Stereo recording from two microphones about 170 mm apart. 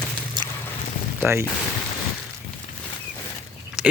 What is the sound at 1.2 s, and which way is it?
Speech, 15° right (ahead or behind).